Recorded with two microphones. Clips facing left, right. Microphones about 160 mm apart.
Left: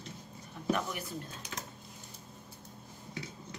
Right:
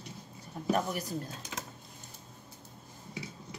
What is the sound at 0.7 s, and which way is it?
Speech, 40° right (ahead or behind).